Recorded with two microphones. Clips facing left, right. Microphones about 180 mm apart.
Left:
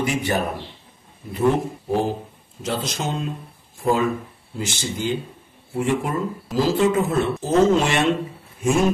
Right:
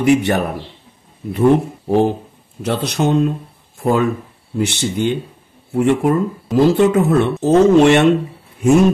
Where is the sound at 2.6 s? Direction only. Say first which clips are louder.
Right 8 dB; 65° right (ahead or behind).